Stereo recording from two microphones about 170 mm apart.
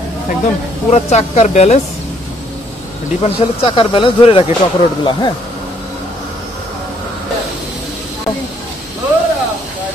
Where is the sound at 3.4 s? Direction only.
35° left (ahead or behind).